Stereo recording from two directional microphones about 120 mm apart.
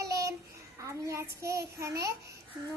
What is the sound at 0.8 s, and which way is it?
A child's voice, 25° right (ahead or behind).